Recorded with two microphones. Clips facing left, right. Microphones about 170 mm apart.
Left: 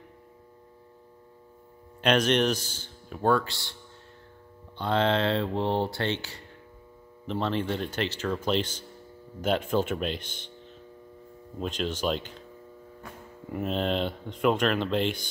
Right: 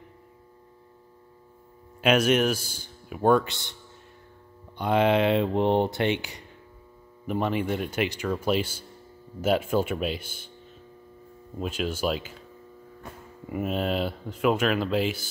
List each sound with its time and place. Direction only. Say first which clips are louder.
2.0 s speech: right 2 dB; 5° right (ahead or behind)
4.7 s speech: right 3 dB; 15° right (ahead or behind)
11.6 s speech: right 1 dB; 5° right (ahead or behind)
13.5 s speech: right 1 dB; 5° right (ahead or behind)